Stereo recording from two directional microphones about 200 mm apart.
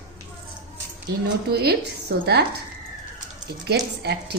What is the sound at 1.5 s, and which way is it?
Speech, 55° right (ahead or behind).